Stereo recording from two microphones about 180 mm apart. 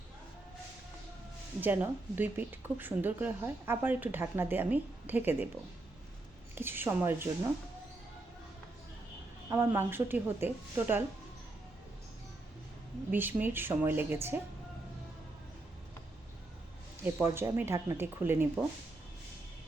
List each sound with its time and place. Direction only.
1.6 s speech: 10° right (ahead or behind)
6.6 s speech: 10° right (ahead or behind)
9.5 s speech: 15° right (ahead or behind)
13.1 s speech: 10° right (ahead or behind)
17.0 s speech: 10° right (ahead or behind)